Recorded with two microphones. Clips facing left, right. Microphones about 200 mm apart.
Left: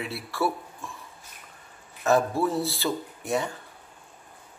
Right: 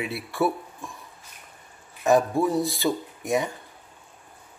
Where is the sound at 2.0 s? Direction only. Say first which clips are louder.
Right 2 dB; 15° right (ahead or behind).